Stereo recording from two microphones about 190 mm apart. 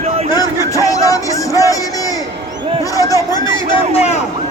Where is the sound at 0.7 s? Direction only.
15° left (ahead or behind).